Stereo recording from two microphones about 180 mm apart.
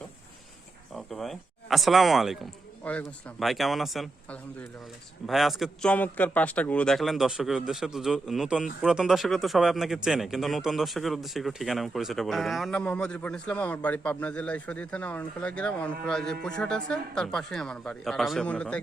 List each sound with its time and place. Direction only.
0.9 s speech: centre (ahead or behind)